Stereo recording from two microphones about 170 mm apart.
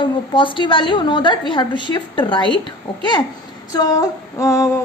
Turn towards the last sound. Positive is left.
turn(degrees=20)  # may be behind; listen again after turning